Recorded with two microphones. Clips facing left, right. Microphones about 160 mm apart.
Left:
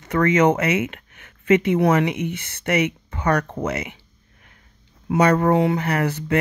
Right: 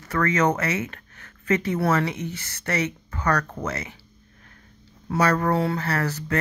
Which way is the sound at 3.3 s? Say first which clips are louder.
Left 3 dB; 25° left (ahead or behind).